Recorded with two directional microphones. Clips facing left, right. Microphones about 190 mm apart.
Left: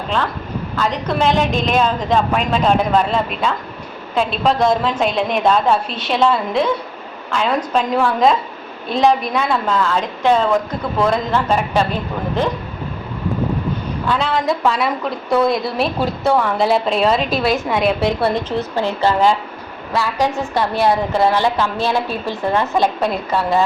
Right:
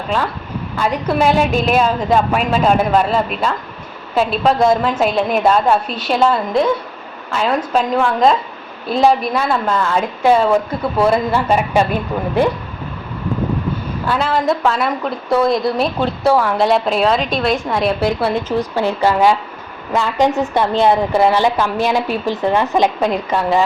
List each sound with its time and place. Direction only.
0.8 s a woman's voice: 10° right (ahead or behind)
14.1 s a woman's voice: 5° right (ahead or behind)
18.8 s a woman's voice: 15° right (ahead or behind)
23.3 s a woman's voice: 15° right (ahead or behind)